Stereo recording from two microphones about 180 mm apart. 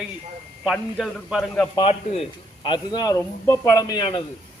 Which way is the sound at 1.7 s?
35° left (ahead or behind).